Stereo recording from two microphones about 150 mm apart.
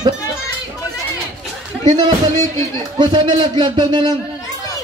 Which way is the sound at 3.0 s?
30° right (ahead or behind).